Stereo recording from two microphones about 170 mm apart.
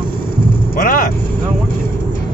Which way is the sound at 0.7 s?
55° left (ahead or behind).